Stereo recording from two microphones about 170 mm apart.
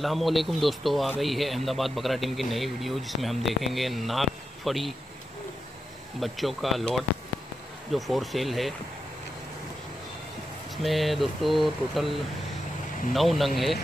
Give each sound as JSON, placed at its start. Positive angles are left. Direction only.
{"t": 0.0, "sound": "speech", "side_deg": 0}
{"t": 6.1, "sound": "speech", "side_deg": 0}
{"t": 10.8, "sound": "speech", "side_deg": 0}